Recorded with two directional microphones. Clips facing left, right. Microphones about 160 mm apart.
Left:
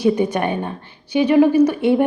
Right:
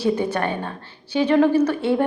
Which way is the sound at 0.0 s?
15° left (ahead or behind).